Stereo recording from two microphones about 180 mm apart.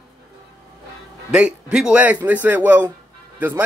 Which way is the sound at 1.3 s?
5° right (ahead or behind).